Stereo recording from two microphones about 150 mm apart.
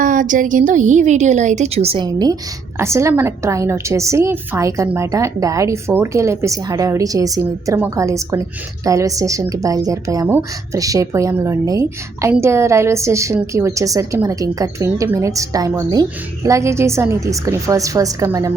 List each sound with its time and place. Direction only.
0.0 s a woman's voice: 60° right (ahead or behind); by 2.0 s 40° right (ahead or behind)
2.0 s a woman's voice: 25° right (ahead or behind)